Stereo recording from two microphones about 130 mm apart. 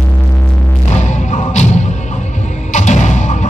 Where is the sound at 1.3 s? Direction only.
65° left (ahead or behind).